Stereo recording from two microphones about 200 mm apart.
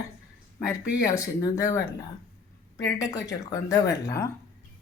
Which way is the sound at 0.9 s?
15° left (ahead or behind).